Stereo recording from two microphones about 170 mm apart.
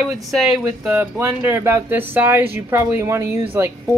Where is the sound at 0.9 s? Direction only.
10° right (ahead or behind).